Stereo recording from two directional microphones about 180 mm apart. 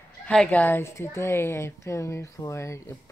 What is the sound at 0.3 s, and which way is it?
A woman's voice, 5° left (ahead or behind).